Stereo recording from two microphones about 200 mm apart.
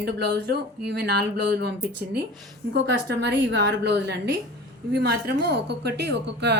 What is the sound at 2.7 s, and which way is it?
A woman's voice, 60° right (ahead or behind).